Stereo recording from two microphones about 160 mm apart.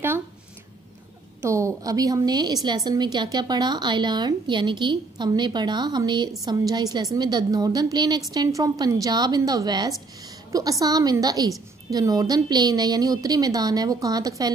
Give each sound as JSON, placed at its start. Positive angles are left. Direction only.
{"t": 1.4, "sound": "a woman's voice", "side_deg": -20}